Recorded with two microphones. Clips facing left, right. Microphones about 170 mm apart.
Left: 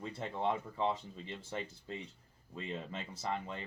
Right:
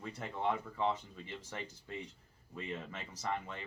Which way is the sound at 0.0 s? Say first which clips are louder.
Left 1 dB; 25° left (ahead or behind).